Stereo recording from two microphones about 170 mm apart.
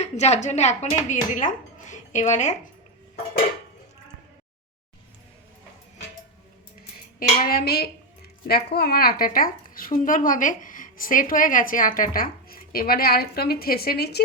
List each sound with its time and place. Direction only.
0.0 s speech: 40° left (ahead or behind)
7.4 s a woman's voice: 65° left (ahead or behind)